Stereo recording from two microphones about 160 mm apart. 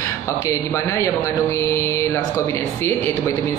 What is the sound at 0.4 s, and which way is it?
A woman's voice, 15° left (ahead or behind).